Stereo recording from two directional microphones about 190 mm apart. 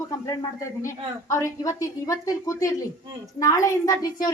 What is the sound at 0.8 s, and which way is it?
A woman's voice, 15° left (ahead or behind).